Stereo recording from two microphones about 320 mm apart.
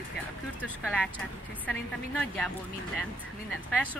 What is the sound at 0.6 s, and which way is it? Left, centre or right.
Speech, centre.